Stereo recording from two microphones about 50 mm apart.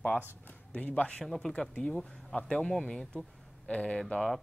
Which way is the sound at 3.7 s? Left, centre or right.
Left.